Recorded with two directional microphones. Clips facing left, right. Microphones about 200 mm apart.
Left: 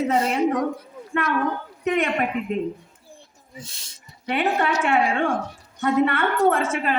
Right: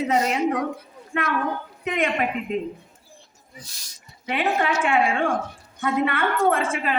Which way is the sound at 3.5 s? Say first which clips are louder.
Left 5 dB; 25° left (ahead or behind).